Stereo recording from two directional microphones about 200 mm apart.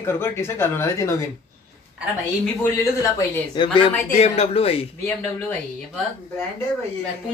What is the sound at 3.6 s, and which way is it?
Speech, 25° left (ahead or behind).